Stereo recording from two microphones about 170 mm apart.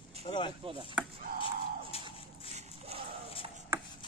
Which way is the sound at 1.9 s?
35° left (ahead or behind).